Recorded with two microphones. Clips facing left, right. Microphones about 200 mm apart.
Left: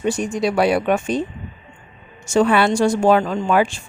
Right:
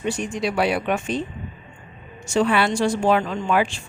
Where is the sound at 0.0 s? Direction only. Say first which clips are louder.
Left 4 dB; 45° left (ahead or behind).